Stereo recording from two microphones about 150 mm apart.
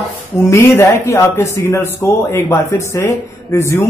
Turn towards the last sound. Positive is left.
turn(degrees=20)  # may be behind; listen again after turning